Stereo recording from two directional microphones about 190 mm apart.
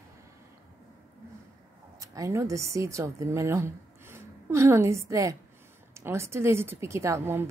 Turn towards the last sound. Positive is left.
turn(degrees=-15)  # may be behind; listen again after turning